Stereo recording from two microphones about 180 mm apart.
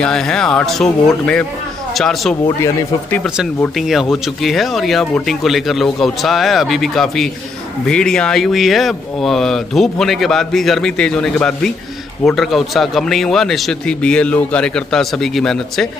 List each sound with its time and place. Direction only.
0.0 s speech: 5° left (ahead or behind)
2.4 s speech: 15° left (ahead or behind)
3.7 s speech: centre (ahead or behind)